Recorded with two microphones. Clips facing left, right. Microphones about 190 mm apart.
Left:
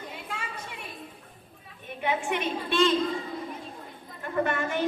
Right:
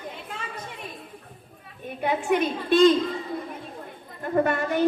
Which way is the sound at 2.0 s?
40° right (ahead or behind).